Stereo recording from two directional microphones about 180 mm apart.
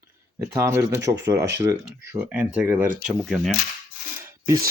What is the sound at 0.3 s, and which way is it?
Speech, 15° right (ahead or behind).